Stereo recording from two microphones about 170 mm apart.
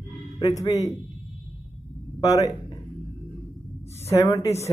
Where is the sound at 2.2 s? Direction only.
20° left (ahead or behind).